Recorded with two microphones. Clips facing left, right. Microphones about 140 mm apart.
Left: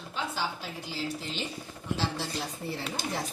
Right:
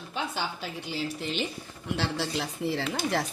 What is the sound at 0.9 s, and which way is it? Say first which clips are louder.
Speech: right 3 dB; 65° right (ahead or behind).